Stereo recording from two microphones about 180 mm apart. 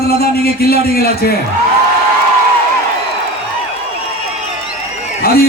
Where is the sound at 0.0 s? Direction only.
60° left (ahead or behind).